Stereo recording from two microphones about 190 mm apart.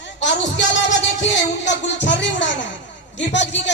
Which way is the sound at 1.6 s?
65° left (ahead or behind).